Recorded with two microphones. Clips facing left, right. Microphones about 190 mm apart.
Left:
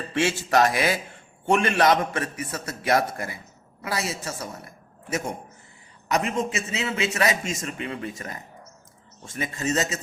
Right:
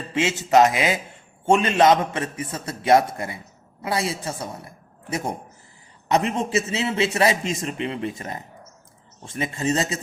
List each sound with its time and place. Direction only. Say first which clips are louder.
0.1 s a man's voice: right 4 dB; 20° right (ahead or behind)